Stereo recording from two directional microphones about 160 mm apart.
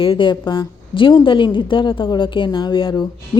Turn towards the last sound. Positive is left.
turn(degrees=30)  # may be behind; listen again after turning